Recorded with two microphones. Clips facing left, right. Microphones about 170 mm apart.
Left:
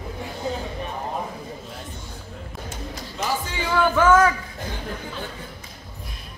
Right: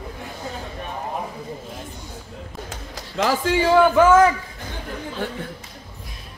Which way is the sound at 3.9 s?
25° right (ahead or behind).